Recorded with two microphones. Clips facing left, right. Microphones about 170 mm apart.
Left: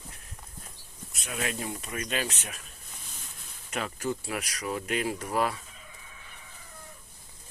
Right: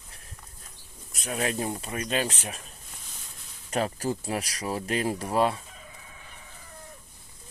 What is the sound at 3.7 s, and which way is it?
Speech, 35° right (ahead or behind).